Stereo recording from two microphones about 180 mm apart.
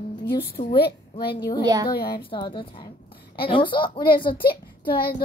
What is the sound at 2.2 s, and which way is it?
A child's voice, 25° left (ahead or behind).